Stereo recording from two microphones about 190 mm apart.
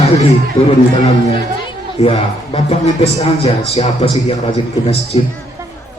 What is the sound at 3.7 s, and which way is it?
A man's voice, 35° left (ahead or behind).